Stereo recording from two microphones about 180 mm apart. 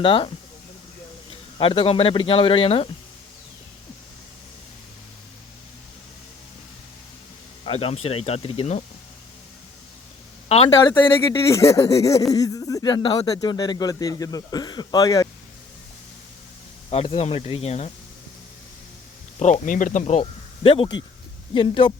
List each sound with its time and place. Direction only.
0.0 s speech: 30° left (ahead or behind)
1.5 s speech: 30° left (ahead or behind)
7.6 s speech: 35° left (ahead or behind)
10.8 s speech: 15° left (ahead or behind)
16.9 s speech: 30° left (ahead or behind)
19.4 s speech: 45° left (ahead or behind)
20.7 s speech: 30° left (ahead or behind)